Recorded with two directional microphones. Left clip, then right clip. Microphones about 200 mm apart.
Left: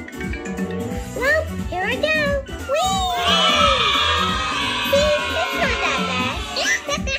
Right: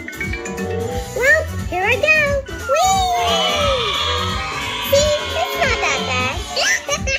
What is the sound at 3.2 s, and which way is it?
Music, 45° left (ahead or behind).